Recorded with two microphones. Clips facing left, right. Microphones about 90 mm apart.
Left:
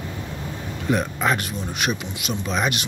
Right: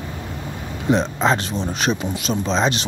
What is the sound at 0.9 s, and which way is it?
Speech, 25° right (ahead or behind).